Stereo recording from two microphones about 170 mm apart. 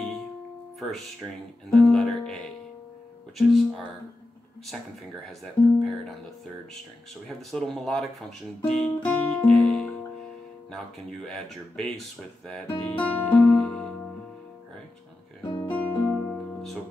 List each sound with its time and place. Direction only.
1.7 s music: 5° left (ahead or behind)
3.3 s speech: centre (ahead or behind)
5.4 s speech: centre (ahead or behind)
7.5 s speech: 5° left (ahead or behind)
8.6 s music: 5° left (ahead or behind)
11.2 s speech: 5° left (ahead or behind)
15.4 s music: 30° left (ahead or behind)
15.7 s music: 10° left (ahead or behind)